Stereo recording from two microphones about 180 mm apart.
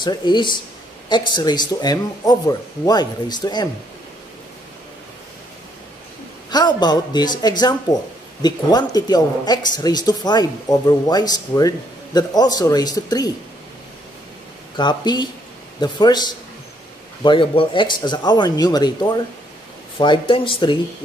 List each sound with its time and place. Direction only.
0.0 s speech: 25° left (ahead or behind)
6.5 s speech: 25° left (ahead or behind)
14.8 s speech: 25° left (ahead or behind)